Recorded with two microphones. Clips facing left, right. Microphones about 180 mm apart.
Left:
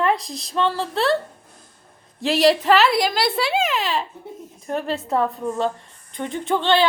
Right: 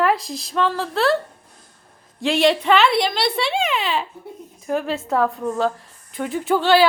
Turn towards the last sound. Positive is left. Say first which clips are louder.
# right 3 dB
turn(degrees=-5)  # may be behind; listen again after turning